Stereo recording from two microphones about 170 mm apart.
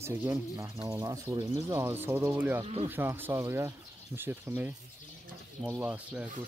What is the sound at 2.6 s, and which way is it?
Speech, 35° right (ahead or behind).